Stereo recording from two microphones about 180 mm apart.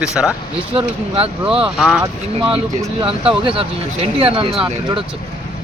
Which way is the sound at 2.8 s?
25° right (ahead or behind).